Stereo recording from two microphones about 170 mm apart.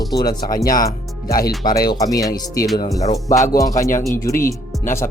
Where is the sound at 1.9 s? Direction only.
20° left (ahead or behind).